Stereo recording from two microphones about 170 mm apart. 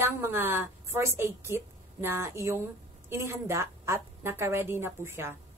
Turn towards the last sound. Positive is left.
turn(degrees=-15)  # may be behind; listen again after turning